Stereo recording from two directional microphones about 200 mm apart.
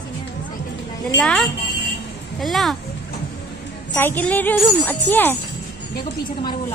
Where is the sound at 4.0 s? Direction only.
10° left (ahead or behind).